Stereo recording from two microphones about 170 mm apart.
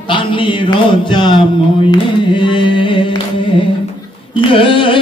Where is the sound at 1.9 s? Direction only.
30° left (ahead or behind).